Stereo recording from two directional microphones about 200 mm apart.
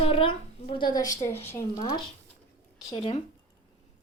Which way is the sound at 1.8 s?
30° left (ahead or behind).